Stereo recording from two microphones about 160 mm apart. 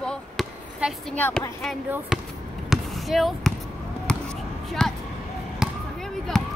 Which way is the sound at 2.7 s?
Centre (ahead or behind).